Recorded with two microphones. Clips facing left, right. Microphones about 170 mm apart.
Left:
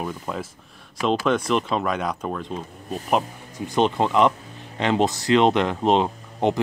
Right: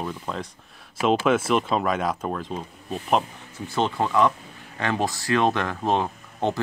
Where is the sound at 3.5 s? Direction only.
15° left (ahead or behind).